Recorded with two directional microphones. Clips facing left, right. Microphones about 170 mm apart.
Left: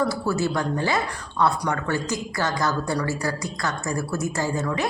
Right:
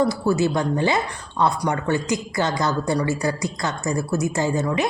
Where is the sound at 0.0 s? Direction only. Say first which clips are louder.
Right 4 dB; 20° right (ahead or behind).